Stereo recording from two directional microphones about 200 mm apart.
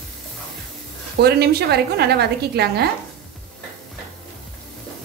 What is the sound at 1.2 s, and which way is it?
A woman's voice, 55° right (ahead or behind).